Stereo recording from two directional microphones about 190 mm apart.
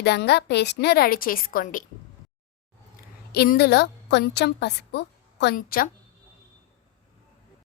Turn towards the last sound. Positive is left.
turn(degrees=50)  # may be behind; listen again after turning